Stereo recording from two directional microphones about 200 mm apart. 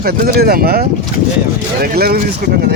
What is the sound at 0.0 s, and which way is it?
Speech, 50° right (ahead or behind).